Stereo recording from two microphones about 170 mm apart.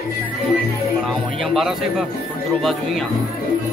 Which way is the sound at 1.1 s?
Centre (ahead or behind).